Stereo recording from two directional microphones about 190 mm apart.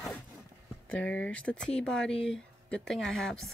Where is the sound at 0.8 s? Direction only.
5° left (ahead or behind).